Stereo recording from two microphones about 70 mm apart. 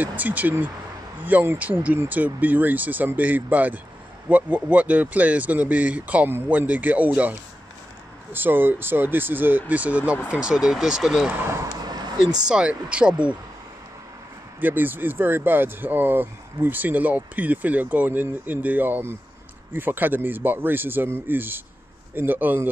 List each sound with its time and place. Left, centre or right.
0.0 s speech: right; by 11.2 s centre
11.3 s speech: right
11.6 s a sound: right
12.4 s speech: centre
14.6 s speech: right